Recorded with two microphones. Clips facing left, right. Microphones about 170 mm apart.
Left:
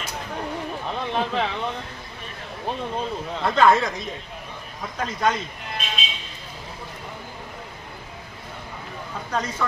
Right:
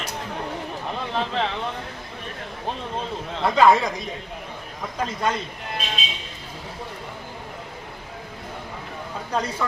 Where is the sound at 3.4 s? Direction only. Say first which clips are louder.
Right 1 dB; 10° right (ahead or behind).